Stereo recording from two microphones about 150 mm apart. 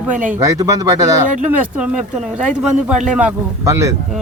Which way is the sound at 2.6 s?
5° right (ahead or behind).